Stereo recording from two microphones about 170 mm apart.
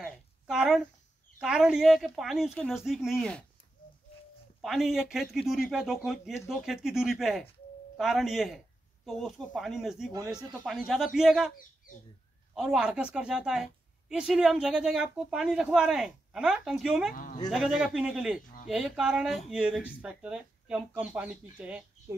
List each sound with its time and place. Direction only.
0.0 s a sound: centre (ahead or behind)
1.4 s a woman's voice: 5° right (ahead or behind)
4.6 s a woman's voice: centre (ahead or behind)
12.5 s a woman's voice: 5° right (ahead or behind)
17.1 s speech: 50° left (ahead or behind)
17.5 s a woman's voice: centre (ahead or behind)